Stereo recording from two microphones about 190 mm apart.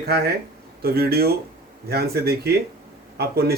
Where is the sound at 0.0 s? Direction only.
55° right (ahead or behind).